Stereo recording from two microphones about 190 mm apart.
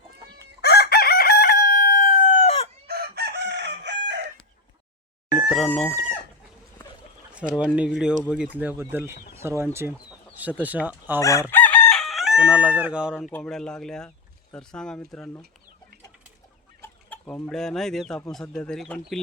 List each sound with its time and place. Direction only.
0.6 s chicken: 60° left (ahead or behind); by 2.6 s 35° left (ahead or behind)
2.8 s chicken: 55° right (ahead or behind)
5.5 s speech: 5° left (ahead or behind)
7.5 s speech: 5° right (ahead or behind)
11.2 s chicken: 15° left (ahead or behind); by 13.3 s 5° right (ahead or behind)
13.3 s speech: 5° left (ahead or behind)
16.8 s chicken: 10° left (ahead or behind)
17.4 s speech: 5° left (ahead or behind)